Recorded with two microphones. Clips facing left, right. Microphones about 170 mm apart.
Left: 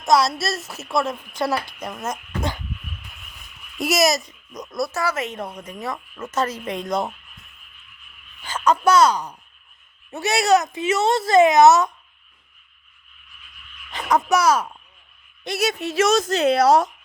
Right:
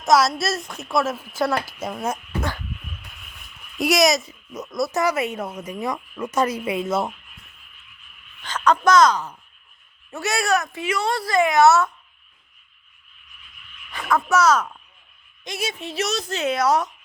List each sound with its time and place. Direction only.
0.0 s a woman's voice: centre (ahead or behind)
3.8 s a woman's voice: centre (ahead or behind)
4.9 s a woman's voice: 15° right (ahead or behind)
8.4 s speech: 10° left (ahead or behind)
13.9 s speech: 20° left (ahead or behind)
15.8 s speech: 45° left (ahead or behind); by 16.9 s 30° left (ahead or behind)